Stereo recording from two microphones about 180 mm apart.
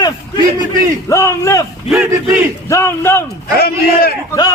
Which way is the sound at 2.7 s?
15° left (ahead or behind).